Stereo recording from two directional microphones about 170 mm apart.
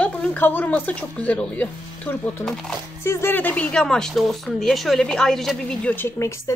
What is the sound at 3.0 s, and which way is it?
A woman's voice, 15° left (ahead or behind).